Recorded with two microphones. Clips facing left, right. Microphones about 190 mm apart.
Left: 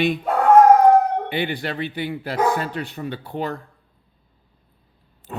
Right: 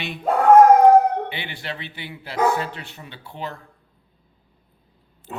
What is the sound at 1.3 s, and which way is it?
Speech, 50° left (ahead or behind).